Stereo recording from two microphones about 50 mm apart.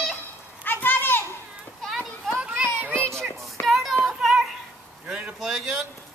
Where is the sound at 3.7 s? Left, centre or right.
Centre.